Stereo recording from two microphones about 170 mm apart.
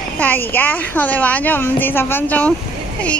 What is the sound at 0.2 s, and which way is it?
Speech, 10° left (ahead or behind).